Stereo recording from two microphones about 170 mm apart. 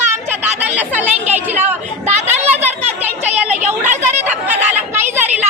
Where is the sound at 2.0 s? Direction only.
40° right (ahead or behind).